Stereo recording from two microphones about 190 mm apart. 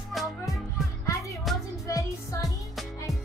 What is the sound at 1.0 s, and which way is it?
Music, 15° left (ahead or behind).